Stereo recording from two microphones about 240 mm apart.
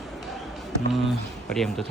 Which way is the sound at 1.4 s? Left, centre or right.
Centre.